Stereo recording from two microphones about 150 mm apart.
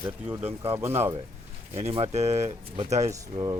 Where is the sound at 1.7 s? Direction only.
40° right (ahead or behind).